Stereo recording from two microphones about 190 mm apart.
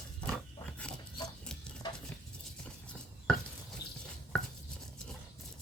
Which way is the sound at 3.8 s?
20° left (ahead or behind).